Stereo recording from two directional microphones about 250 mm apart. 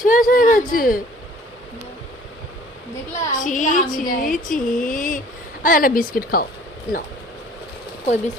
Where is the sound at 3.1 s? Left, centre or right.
Left.